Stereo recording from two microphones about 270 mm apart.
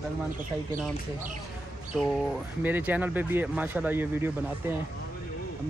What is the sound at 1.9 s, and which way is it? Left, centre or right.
Speech, centre.